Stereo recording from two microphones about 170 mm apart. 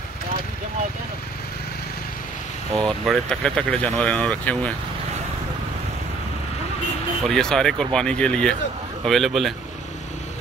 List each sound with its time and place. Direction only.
2.7 s speech: 5° left (ahead or behind)
7.2 s speech: 5° left (ahead or behind)